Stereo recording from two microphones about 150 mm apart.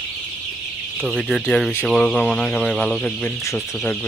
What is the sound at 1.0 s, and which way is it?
Speech, centre (ahead or behind).